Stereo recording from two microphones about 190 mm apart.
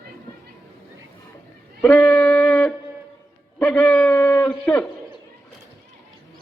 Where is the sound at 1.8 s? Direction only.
5° left (ahead or behind).